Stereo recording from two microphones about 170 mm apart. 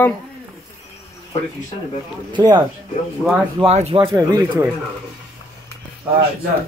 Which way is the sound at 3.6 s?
35° right (ahead or behind).